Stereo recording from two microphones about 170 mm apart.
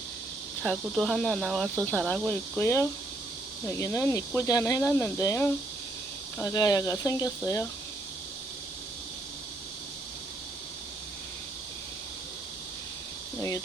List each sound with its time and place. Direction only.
0.6 s speech: 5° left (ahead or behind); by 7.7 s 20° left (ahead or behind)